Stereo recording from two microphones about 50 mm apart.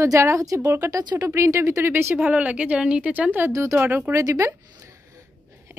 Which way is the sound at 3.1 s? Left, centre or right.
Right.